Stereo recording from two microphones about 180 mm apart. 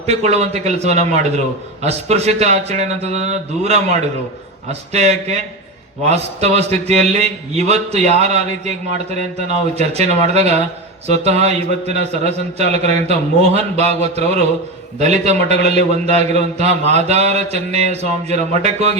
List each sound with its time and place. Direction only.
0.0 s a man's voice: 35° right (ahead or behind)